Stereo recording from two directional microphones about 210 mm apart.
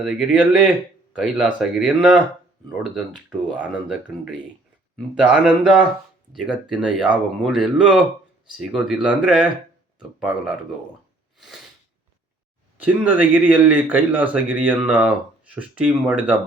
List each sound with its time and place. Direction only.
0.0 s speech: 5° right (ahead or behind)
11.3 s a sound: centre (ahead or behind)
12.7 s speech: 10° right (ahead or behind)